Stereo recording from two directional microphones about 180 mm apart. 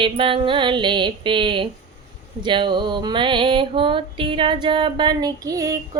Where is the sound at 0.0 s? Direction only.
30° right (ahead or behind).